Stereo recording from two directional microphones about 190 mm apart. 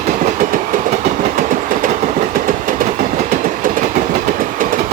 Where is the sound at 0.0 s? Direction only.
40° right (ahead or behind).